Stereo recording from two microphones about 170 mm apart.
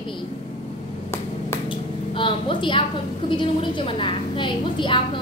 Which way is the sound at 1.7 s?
30° left (ahead or behind).